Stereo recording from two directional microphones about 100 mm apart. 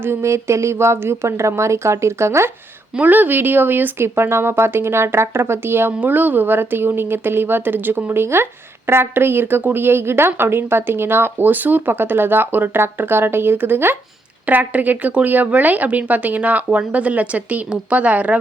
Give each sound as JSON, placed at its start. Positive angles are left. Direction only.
{"t": 0.0, "sound": "speech", "side_deg": -25}
{"t": 2.9, "sound": "speech", "side_deg": -15}